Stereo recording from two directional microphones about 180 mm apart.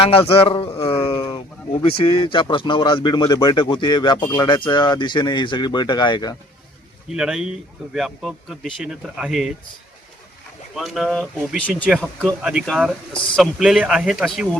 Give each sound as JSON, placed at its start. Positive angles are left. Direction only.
{"t": 0.0, "sound": "a sound", "side_deg": 30}
{"t": 1.8, "sound": "speech", "side_deg": 30}
{"t": 7.1, "sound": "speech", "side_deg": -5}
{"t": 10.8, "sound": "speech", "side_deg": 0}